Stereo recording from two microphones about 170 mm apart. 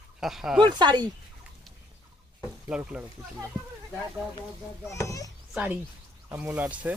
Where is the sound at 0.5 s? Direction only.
25° right (ahead or behind).